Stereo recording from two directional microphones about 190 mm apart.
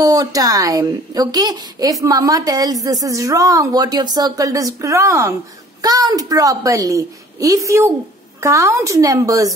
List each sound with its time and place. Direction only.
0.0 s a child's voice: 20° right (ahead or behind)